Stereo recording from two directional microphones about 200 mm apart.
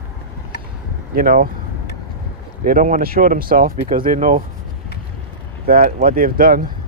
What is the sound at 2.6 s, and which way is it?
Speech, 45° right (ahead or behind).